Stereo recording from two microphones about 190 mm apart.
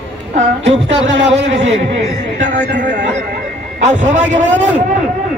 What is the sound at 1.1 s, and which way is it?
Speech, 70° right (ahead or behind).